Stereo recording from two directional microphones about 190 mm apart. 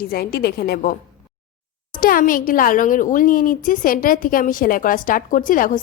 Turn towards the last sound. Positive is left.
turn(degrees=45)  # may be behind; listen again after turning